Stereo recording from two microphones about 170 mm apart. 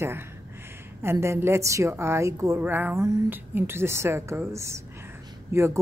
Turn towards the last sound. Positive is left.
turn(degrees=-15)  # may be behind; listen again after turning